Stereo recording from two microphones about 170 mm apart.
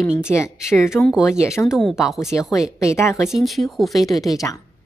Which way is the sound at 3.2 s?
Centre (ahead or behind).